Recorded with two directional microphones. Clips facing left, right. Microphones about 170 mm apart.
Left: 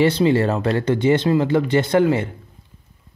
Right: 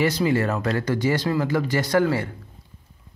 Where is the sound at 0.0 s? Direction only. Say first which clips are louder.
Left 5 dB; 25° left (ahead or behind).